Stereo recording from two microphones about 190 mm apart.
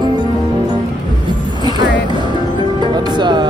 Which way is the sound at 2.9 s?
25° right (ahead or behind).